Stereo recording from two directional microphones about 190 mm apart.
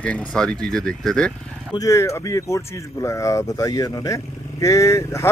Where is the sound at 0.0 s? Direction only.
5° left (ahead or behind).